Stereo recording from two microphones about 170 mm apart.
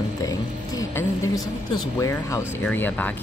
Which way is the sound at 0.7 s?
20° left (ahead or behind).